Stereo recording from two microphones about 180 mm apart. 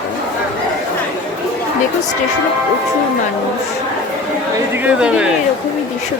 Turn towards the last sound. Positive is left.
turn(degrees=-5)  # may be behind; listen again after turning